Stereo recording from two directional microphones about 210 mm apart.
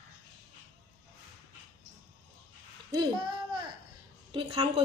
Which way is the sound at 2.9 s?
20° right (ahead or behind).